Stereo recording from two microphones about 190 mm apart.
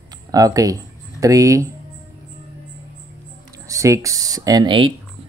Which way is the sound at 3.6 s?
15° right (ahead or behind).